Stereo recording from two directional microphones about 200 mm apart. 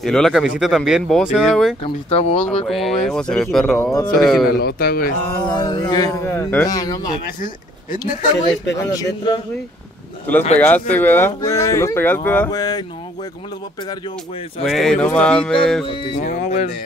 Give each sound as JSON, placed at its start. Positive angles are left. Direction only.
{"t": 0.0, "sound": "speech", "side_deg": 0}
{"t": 1.8, "sound": "speech", "side_deg": 30}
{"t": 2.7, "sound": "speech", "side_deg": 0}
{"t": 4.2, "sound": "speech", "side_deg": 0}
{"t": 4.5, "sound": "speech", "side_deg": 50}
{"t": 5.5, "sound": "speech", "side_deg": 20}
{"t": 7.3, "sound": "speech", "side_deg": 40}
{"t": 8.7, "sound": "speech", "side_deg": 15}
{"t": 10.6, "sound": "speech", "side_deg": 10}
{"t": 14.6, "sound": "speech", "side_deg": 0}
{"t": 16.2, "sound": "speech", "side_deg": 40}